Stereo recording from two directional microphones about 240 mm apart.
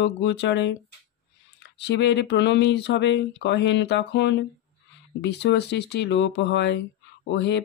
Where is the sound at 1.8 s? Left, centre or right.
Left.